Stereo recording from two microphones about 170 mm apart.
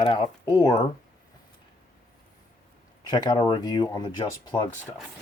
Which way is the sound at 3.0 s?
25° left (ahead or behind).